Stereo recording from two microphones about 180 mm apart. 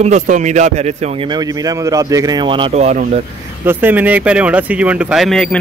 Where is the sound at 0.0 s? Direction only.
40° right (ahead or behind).